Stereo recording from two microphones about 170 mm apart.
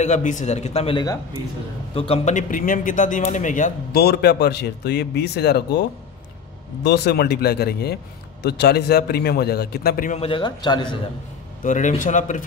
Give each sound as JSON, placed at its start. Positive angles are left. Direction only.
{"t": 0.0, "sound": "a man's voice", "side_deg": 45}
{"t": 2.0, "sound": "a man's voice", "side_deg": 35}
{"t": 3.9, "sound": "speech", "side_deg": 70}
{"t": 6.8, "sound": "speech", "side_deg": 80}
{"t": 10.1, "sound": "a man's voice", "side_deg": 30}
{"t": 11.6, "sound": "a man's voice", "side_deg": 50}